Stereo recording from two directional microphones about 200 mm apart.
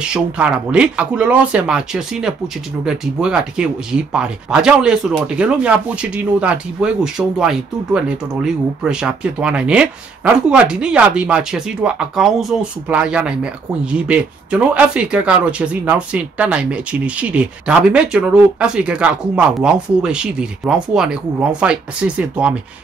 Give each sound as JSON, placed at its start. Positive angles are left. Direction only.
{"t": 0.0, "sound": "speech", "side_deg": -5}